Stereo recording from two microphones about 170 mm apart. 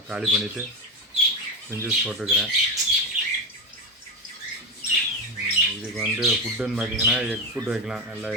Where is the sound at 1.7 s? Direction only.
15° right (ahead or behind).